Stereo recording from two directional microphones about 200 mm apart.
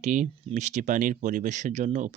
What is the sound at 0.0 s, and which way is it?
Speech, 35° right (ahead or behind).